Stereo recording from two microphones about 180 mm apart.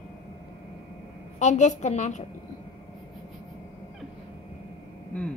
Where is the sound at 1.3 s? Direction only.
40° left (ahead or behind).